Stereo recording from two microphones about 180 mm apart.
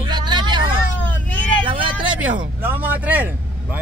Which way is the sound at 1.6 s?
30° right (ahead or behind).